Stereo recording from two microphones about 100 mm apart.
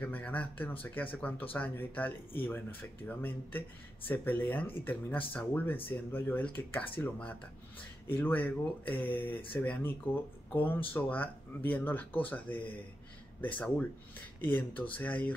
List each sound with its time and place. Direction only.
0.0 s speech: 15° left (ahead or behind)
14.4 s speech: 20° left (ahead or behind)